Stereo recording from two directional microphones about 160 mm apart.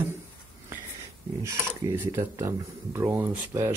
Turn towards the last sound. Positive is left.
turn(degrees=-15)  # may be behind; listen again after turning